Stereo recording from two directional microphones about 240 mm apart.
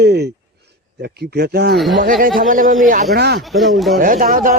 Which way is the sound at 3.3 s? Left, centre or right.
Centre.